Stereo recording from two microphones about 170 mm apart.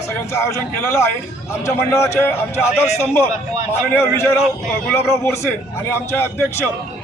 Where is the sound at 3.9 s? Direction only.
15° left (ahead or behind).